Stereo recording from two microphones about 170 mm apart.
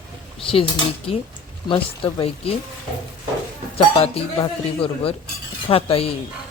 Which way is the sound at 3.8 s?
35° left (ahead or behind).